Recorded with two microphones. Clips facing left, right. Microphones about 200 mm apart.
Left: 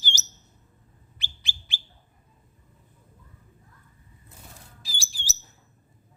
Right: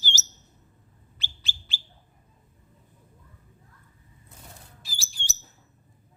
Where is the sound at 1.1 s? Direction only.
15° left (ahead or behind).